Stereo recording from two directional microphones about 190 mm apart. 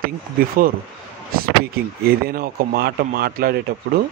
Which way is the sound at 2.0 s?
50° right (ahead or behind).